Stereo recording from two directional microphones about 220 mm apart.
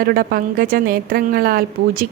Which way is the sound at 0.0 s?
45° right (ahead or behind).